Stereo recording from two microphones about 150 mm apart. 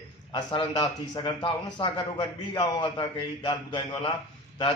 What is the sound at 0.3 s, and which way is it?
A man's voice, 35° left (ahead or behind).